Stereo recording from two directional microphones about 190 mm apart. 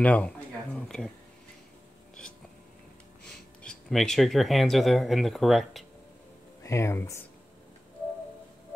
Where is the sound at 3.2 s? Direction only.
5° left (ahead or behind).